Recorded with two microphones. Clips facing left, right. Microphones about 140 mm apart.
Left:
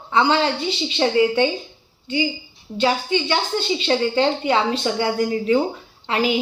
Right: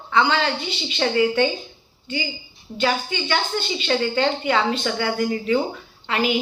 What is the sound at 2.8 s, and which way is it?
A woman's voice, 25° left (ahead or behind).